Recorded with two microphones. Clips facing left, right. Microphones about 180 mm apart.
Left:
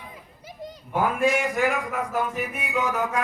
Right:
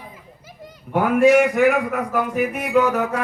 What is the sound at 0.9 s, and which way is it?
Speech, 65° right (ahead or behind).